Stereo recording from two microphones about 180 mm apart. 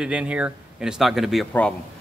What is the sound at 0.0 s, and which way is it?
Speech, 5° right (ahead or behind).